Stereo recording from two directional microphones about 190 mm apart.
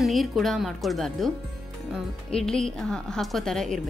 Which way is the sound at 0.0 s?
Centre (ahead or behind).